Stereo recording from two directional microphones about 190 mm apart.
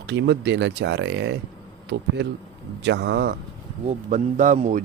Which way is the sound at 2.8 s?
60° right (ahead or behind).